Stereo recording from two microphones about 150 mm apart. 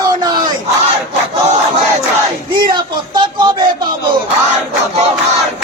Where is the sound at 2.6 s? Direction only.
30° right (ahead or behind).